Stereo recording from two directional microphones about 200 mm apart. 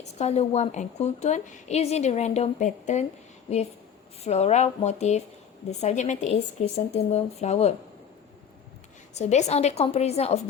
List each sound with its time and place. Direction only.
0.2 s a woman's voice: 35° left (ahead or behind)
9.1 s a woman's voice: 35° left (ahead or behind)